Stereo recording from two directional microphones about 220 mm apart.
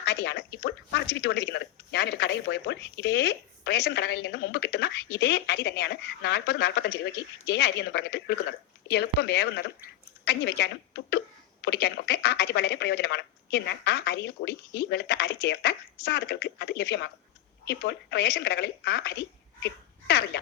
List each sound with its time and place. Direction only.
0.0 s speech: 50° left (ahead or behind)